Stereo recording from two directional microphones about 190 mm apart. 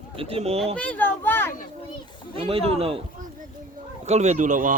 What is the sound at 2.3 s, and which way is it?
Speech, 30° right (ahead or behind).